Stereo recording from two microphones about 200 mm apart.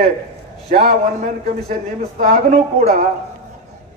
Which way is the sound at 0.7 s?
45° right (ahead or behind).